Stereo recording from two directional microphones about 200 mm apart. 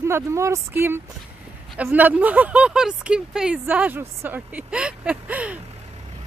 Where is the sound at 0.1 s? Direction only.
15° right (ahead or behind).